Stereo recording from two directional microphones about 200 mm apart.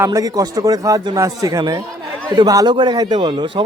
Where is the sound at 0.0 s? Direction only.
15° right (ahead or behind).